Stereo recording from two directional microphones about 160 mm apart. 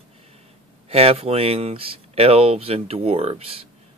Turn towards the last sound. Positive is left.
turn(degrees=-40)  # may be behind; listen again after turning